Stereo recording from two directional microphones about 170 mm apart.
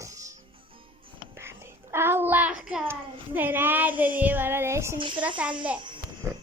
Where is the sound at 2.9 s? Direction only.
10° right (ahead or behind).